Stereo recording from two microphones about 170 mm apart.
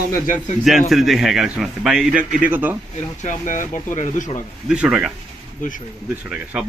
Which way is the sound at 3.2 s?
50° left (ahead or behind).